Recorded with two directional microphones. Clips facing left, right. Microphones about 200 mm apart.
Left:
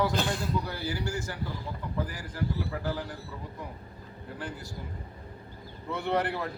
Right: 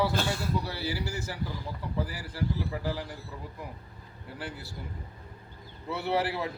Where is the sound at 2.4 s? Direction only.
10° right (ahead or behind).